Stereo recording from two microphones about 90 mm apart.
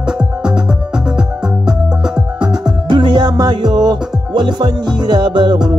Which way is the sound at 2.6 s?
65° right (ahead or behind).